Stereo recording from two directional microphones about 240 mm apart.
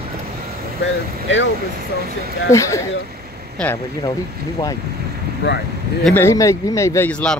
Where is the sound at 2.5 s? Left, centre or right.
Centre.